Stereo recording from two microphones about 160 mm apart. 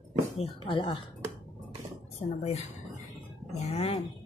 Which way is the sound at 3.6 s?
40° left (ahead or behind).